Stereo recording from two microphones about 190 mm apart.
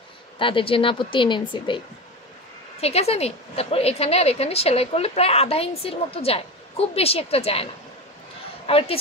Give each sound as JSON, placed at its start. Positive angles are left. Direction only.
{"t": 0.4, "sound": "speech", "side_deg": 30}
{"t": 2.8, "sound": "a woman's voice", "side_deg": 35}